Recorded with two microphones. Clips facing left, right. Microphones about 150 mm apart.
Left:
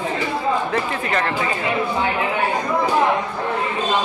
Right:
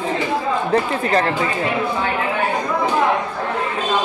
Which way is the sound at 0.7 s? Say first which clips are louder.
Right 5 dB; 35° right (ahead or behind).